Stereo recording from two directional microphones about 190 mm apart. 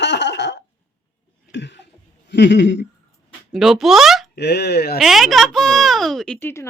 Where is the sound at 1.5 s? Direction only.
65° left (ahead or behind).